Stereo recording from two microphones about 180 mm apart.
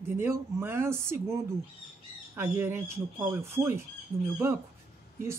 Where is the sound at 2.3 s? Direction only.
15° right (ahead or behind).